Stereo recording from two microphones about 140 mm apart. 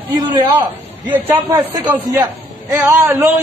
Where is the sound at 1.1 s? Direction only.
25° right (ahead or behind).